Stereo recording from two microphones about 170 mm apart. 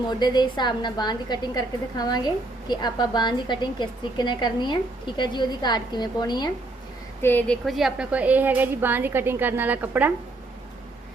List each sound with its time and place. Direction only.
0.1 s a woman's voice: 25° left (ahead or behind)
7.2 s a woman's voice: 10° left (ahead or behind); by 10.1 s 10° right (ahead or behind)